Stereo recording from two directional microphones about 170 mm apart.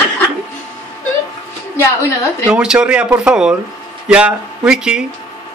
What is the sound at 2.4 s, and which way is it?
Speech, 5° right (ahead or behind).